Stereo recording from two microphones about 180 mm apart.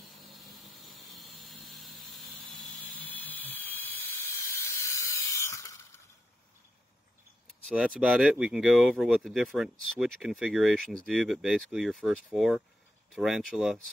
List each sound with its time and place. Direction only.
0.0 s a sound: centre (ahead or behind)
4.6 s steam: 15° left (ahead or behind)
7.6 s speech: centre (ahead or behind)